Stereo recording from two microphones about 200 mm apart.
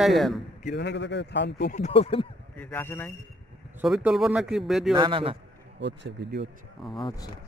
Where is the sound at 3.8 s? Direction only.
Centre (ahead or behind).